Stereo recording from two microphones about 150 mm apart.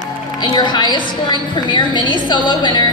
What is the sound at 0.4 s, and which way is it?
A woman's voice, 30° left (ahead or behind).